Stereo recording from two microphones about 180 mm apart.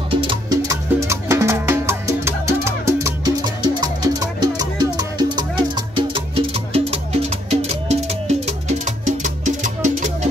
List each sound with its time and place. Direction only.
0.1 s music: 25° right (ahead or behind); by 10.1 s 45° right (ahead or behind)